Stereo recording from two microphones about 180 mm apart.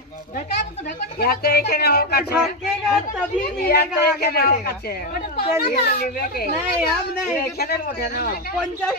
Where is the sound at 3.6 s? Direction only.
60° left (ahead or behind).